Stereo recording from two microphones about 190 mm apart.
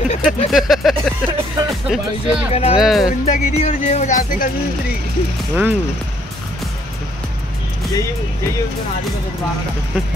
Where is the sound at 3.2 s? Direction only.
35° left (ahead or behind).